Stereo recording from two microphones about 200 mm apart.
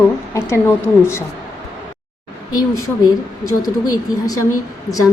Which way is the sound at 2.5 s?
20° left (ahead or behind).